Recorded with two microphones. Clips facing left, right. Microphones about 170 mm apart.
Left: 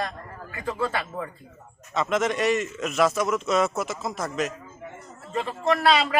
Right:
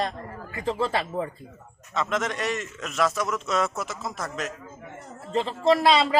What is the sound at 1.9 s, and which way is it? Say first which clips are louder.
A man's voice: left 3 dB; 5° left (ahead or behind).